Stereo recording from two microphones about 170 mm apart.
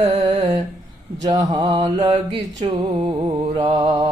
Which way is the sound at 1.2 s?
25° right (ahead or behind).